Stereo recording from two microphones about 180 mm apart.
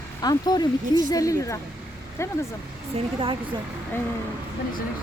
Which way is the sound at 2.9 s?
30° right (ahead or behind).